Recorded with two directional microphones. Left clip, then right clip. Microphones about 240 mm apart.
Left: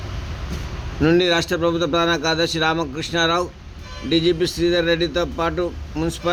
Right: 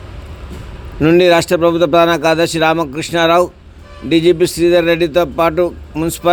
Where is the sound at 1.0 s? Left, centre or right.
Centre.